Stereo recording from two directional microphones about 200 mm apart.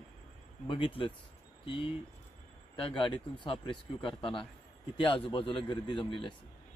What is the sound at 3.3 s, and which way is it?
Speech, 25° left (ahead or behind).